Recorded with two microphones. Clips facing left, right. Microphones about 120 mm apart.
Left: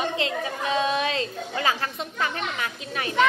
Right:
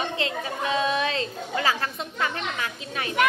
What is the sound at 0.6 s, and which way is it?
Speech, 35° left (ahead or behind).